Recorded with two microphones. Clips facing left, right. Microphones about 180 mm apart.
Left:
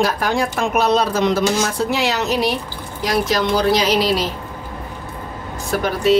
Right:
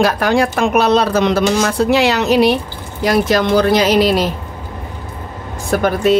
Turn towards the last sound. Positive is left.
turn(degrees=-50)  # may be behind; listen again after turning